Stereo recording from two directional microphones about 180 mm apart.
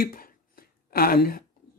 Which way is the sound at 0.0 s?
55° left (ahead or behind).